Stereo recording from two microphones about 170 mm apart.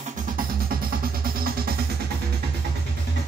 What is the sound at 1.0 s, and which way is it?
Music, 60° right (ahead or behind).